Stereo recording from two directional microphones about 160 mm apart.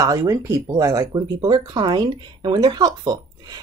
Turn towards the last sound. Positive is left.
turn(degrees=-25)  # may be behind; listen again after turning